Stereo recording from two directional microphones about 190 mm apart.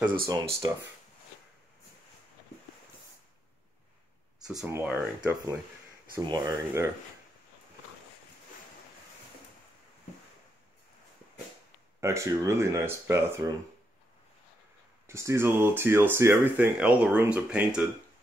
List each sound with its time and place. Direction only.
0.6 s speech: 20° right (ahead or behind)
4.6 s speech: 10° right (ahead or behind)
12.0 s speech: 15° right (ahead or behind)
15.0 s speech: 15° right (ahead or behind)